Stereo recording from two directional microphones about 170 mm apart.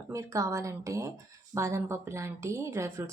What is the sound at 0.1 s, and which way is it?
Speech, 20° right (ahead or behind).